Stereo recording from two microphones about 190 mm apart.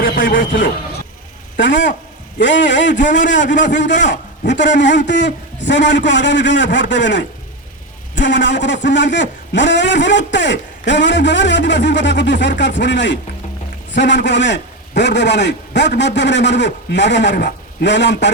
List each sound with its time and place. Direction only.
0.0 s a man's voice: 50° left (ahead or behind)
1.5 s a man's voice: 70° left (ahead or behind)